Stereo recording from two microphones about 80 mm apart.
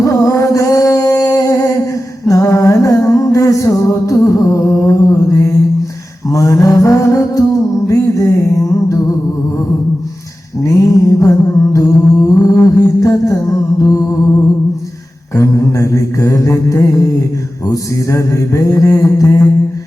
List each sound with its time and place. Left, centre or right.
0.0 s a sound: left
2.2 s music: left
10.6 s music: left
11.7 s mantra: left
12.4 s music: left
15.4 s a sound: left
17.7 s mantra: left